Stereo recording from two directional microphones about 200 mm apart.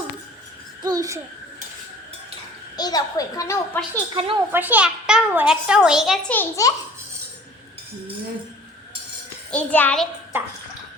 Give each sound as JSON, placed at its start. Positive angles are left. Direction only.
{"t": 0.8, "sound": "a sound", "side_deg": -20}
{"t": 2.7, "sound": "a woman's voice", "side_deg": 20}
{"t": 4.1, "sound": "a woman's voice", "side_deg": -25}
{"t": 4.5, "sound": "a child's voice", "side_deg": -10}
{"t": 6.3, "sound": "a woman's voice", "side_deg": 15}
{"t": 9.5, "sound": "a woman's voice", "side_deg": 10}
{"t": 10.3, "sound": "a sound", "side_deg": -10}